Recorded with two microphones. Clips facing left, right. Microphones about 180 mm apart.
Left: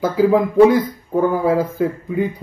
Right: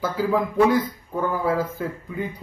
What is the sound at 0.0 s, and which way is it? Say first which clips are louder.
Speech: left 8 dB; 15° left (ahead or behind).